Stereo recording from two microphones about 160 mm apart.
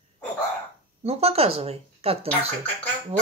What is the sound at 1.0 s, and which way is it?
Speech, 40° right (ahead or behind).